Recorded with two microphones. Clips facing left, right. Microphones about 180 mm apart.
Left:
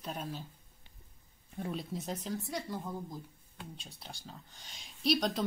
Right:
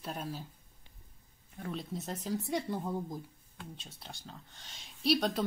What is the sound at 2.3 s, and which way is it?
Speech, 20° right (ahead or behind).